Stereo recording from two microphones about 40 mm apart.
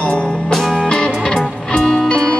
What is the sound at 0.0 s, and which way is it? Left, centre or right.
Music, left.